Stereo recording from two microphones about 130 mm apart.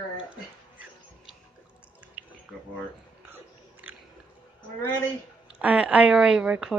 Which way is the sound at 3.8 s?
15° right (ahead or behind).